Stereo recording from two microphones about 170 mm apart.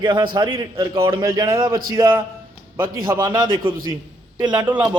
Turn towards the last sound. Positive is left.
turn(degrees=-10)  # may be behind; listen again after turning